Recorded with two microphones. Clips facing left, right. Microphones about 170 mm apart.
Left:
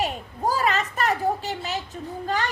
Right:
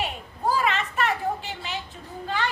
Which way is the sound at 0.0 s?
40° left (ahead or behind).